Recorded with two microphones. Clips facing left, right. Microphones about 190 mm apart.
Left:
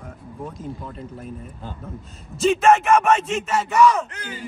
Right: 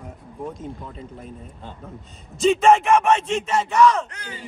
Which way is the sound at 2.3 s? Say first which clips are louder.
Right 1 dB; 5° left (ahead or behind).